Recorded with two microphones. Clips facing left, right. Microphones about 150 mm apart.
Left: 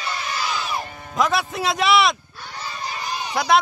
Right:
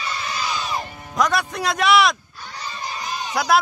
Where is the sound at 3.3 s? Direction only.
Centre (ahead or behind).